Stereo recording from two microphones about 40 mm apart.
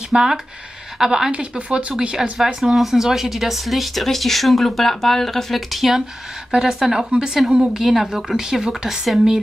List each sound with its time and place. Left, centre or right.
0.1 s speech: centre
1.3 s speech: right
2.3 s speech: centre